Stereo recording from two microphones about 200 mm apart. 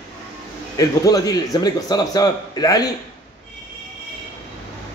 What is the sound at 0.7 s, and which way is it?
A man's voice, 20° left (ahead or behind).